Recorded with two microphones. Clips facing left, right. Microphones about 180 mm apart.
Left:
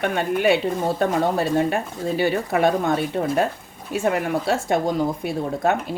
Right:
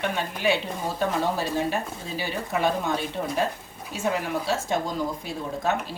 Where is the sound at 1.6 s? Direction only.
60° left (ahead or behind).